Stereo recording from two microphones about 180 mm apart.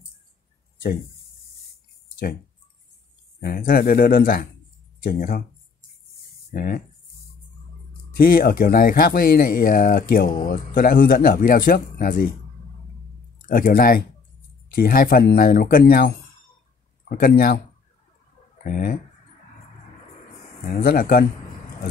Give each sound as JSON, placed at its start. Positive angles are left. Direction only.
{"t": 3.3, "sound": "speech", "side_deg": 55}
{"t": 6.5, "sound": "speech", "side_deg": 55}
{"t": 8.2, "sound": "speech", "side_deg": 55}
{"t": 13.4, "sound": "speech", "side_deg": 55}
{"t": 18.6, "sound": "speech", "side_deg": 50}
{"t": 20.8, "sound": "speech", "side_deg": 55}